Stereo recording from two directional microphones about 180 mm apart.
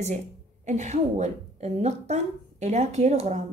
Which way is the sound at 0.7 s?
40° right (ahead or behind).